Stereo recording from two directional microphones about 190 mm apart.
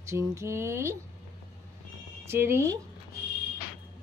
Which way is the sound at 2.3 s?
15° right (ahead or behind).